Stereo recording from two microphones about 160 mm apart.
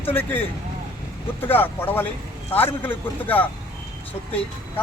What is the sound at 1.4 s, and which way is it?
A man's voice, 15° left (ahead or behind).